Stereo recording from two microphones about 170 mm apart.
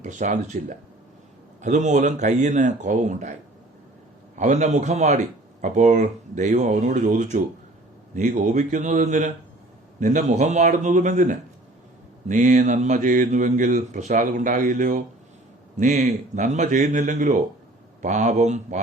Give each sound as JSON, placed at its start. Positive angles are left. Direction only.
{"t": 0.0, "sound": "speech", "side_deg": -45}
{"t": 4.4, "sound": "speech", "side_deg": -45}
{"t": 15.8, "sound": "speech", "side_deg": -40}